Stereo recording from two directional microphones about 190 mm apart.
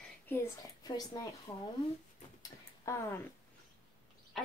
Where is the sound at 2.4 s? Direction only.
15° left (ahead or behind).